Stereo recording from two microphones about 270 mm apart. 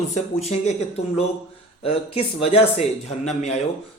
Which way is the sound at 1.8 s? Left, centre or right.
Left.